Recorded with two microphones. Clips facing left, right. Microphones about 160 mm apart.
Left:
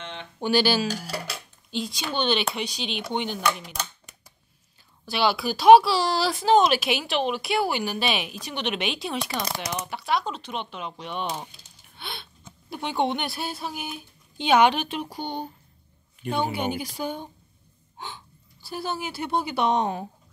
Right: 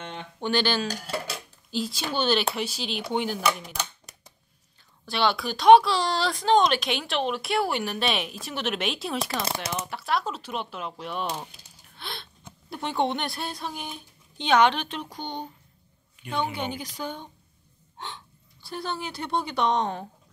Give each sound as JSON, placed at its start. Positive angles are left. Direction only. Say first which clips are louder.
{"t": 0.0, "sound": "a sound", "louder": "even", "side_deg": -45}
{"t": 0.4, "sound": "speech", "louder": "left 3 dB", "side_deg": 10}
{"t": 1.7, "sound": "speech", "louder": "right 1 dB", "side_deg": -5}
{"t": 5.0, "sound": "speech", "louder": "left 1 dB", "side_deg": 5}
{"t": 11.9, "sound": "gasp", "louder": "even", "side_deg": 0}
{"t": 12.6, "sound": "speech", "louder": "left 1 dB", "side_deg": 0}
{"t": 16.5, "sound": "speech", "louder": "left 4 dB", "side_deg": 10}